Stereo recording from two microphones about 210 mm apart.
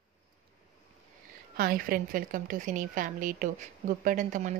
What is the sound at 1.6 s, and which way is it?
Speech, 45° right (ahead or behind).